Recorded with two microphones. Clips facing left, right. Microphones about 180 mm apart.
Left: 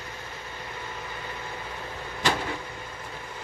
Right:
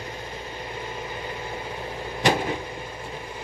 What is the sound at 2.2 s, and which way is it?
Vehicle, 20° right (ahead or behind).